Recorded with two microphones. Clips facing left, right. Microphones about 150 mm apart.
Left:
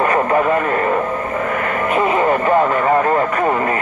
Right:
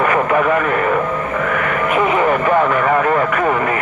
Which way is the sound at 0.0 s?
30° left (ahead or behind).